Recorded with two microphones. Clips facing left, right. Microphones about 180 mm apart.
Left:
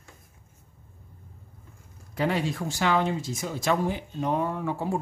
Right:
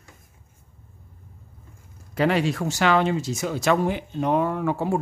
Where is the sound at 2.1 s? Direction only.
85° right.